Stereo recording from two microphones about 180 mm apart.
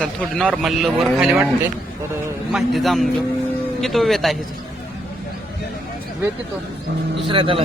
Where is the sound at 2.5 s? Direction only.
Centre (ahead or behind).